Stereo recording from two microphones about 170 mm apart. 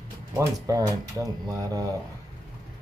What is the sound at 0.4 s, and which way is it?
Speech, 20° right (ahead or behind).